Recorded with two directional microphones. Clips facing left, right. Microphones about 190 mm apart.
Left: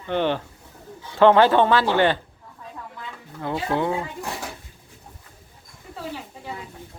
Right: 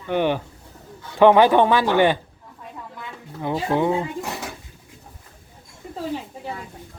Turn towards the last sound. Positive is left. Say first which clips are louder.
# right 5 dB
turn(degrees=-30)  # may be behind; listen again after turning